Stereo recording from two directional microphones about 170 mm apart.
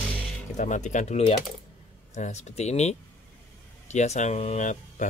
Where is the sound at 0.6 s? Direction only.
45° left (ahead or behind).